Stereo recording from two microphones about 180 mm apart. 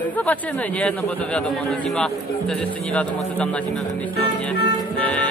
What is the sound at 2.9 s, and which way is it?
Speech, 5° left (ahead or behind).